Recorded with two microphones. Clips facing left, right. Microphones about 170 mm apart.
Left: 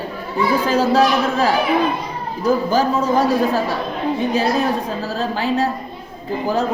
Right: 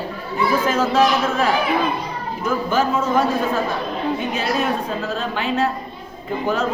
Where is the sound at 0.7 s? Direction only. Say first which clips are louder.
Left 3 dB; 35° left (ahead or behind).